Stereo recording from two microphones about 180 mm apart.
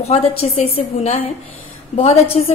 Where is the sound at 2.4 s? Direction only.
40° left (ahead or behind).